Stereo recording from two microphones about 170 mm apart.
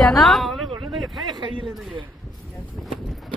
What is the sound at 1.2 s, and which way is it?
Speech, 25° right (ahead or behind).